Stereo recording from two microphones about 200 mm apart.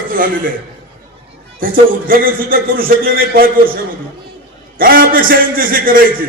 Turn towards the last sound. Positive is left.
turn(degrees=-45)  # may be behind; listen again after turning